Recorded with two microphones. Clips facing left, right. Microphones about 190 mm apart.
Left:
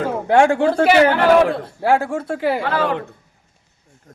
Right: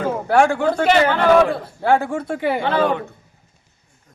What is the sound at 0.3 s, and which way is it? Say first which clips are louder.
Speech: left 2 dB; 25° left (ahead or behind).